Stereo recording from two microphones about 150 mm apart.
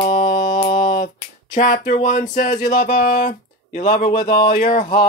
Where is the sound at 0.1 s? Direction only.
55° left (ahead or behind).